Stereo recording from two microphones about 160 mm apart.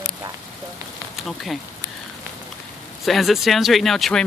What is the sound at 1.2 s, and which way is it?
Speech, centre (ahead or behind).